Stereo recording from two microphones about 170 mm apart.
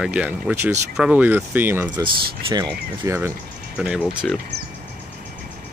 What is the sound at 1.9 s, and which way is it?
Speech, 25° right (ahead or behind).